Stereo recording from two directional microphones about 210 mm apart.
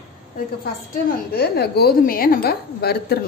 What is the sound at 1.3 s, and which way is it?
A woman's voice, 50° left (ahead or behind).